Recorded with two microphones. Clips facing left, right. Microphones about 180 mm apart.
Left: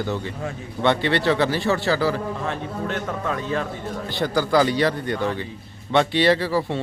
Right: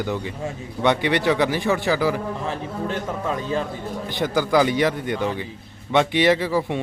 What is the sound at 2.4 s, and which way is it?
Speech, 5° right (ahead or behind).